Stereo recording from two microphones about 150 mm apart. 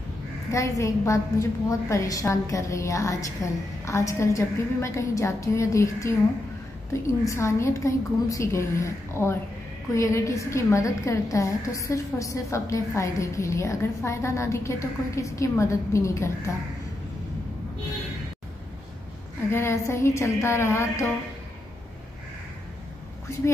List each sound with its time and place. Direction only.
0.5 s a woman's voice: 20° left (ahead or behind)
19.5 s a woman's voice: 20° left (ahead or behind)